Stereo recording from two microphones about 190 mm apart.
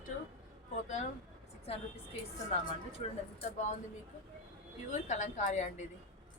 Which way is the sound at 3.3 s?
40° left (ahead or behind).